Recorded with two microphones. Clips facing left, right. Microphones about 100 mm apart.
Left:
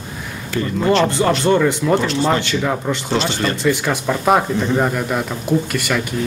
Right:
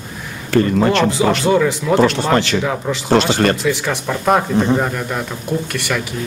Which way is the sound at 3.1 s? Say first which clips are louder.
Right 7 dB; 55° right (ahead or behind).